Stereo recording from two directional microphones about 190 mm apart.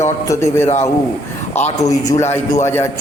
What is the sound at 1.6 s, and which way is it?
Speech, 35° left (ahead or behind).